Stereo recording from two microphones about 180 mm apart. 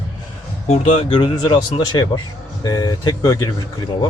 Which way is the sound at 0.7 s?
35° left (ahead or behind).